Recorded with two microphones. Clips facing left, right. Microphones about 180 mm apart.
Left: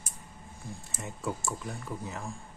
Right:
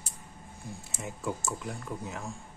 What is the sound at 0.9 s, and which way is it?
Speech, centre (ahead or behind).